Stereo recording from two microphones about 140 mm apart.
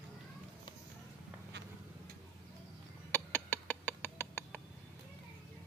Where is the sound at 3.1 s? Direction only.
15° left (ahead or behind).